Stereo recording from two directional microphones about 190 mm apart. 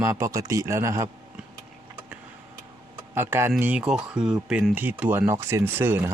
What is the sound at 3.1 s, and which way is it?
Speech, 10° right (ahead or behind).